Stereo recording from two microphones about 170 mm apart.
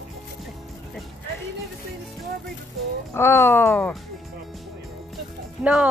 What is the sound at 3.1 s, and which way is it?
Speech, 15° left (ahead or behind).